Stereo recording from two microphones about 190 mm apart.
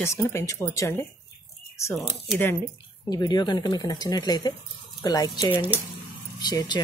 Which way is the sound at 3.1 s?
20° left (ahead or behind).